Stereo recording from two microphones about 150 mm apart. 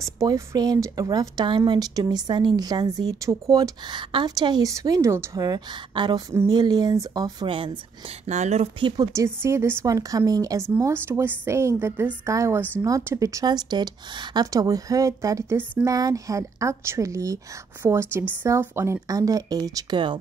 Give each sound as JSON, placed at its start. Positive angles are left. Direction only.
{"t": 0.0, "sound": "a woman's voice", "side_deg": -20}
{"t": 8.3, "sound": "speech", "side_deg": -50}
{"t": 8.7, "sound": "speech", "side_deg": -30}
{"t": 9.1, "sound": "a woman's voice", "side_deg": -20}